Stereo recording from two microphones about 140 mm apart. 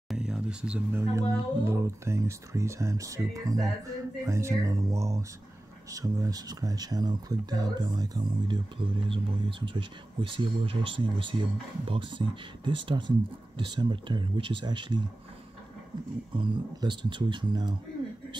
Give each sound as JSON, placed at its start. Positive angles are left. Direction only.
{"t": 0.1, "sound": "a sound", "side_deg": -5}
{"t": 1.6, "sound": "speech", "side_deg": -20}
{"t": 16.3, "sound": "speech", "side_deg": -35}